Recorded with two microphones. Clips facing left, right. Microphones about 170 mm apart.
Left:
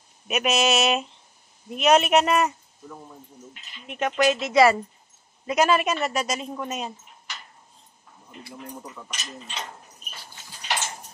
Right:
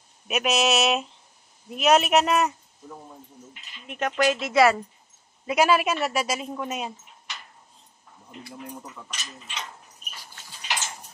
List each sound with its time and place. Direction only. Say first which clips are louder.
0.3 s a woman's voice: left 1 dB; centre (ahead or behind)
3.8 s a woman's voice: left 1 dB; centre (ahead or behind)
9.2 s speech: left 3 dB; 30° left (ahead or behind)